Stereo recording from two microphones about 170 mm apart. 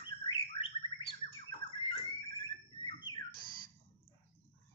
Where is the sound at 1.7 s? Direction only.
30° left (ahead or behind).